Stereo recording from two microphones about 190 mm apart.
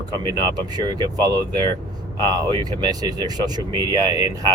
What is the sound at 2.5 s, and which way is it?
Speech, 20° right (ahead or behind).